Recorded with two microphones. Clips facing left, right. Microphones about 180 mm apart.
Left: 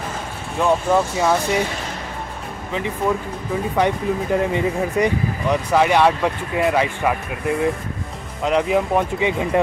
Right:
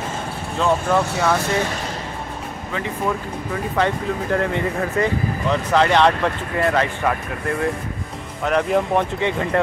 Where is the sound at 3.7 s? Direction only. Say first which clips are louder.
Left 1 dB; 15° left (ahead or behind).